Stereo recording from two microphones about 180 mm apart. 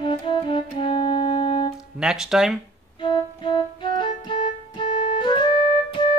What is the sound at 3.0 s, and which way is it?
Music, 25° left (ahead or behind).